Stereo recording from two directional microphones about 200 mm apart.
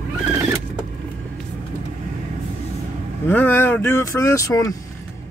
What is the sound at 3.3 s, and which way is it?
Speech, 10° left (ahead or behind).